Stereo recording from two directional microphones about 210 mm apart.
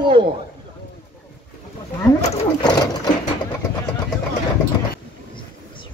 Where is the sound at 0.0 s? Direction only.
25° right (ahead or behind).